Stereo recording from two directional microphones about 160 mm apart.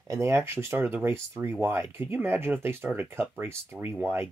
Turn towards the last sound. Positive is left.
turn(degrees=-15)  # may be behind; listen again after turning